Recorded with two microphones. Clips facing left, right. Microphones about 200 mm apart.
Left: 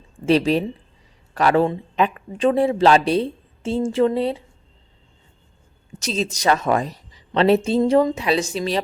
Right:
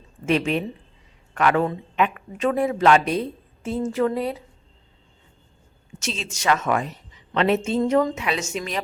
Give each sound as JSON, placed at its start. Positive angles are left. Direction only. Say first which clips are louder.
{"t": 0.3, "sound": "a woman's voice", "louder": "left 5 dB", "side_deg": 35}
{"t": 6.0, "sound": "a woman's voice", "louder": "left 7 dB", "side_deg": 35}